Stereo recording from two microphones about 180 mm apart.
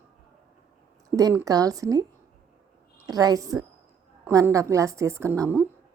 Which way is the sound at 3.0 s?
20° right (ahead or behind).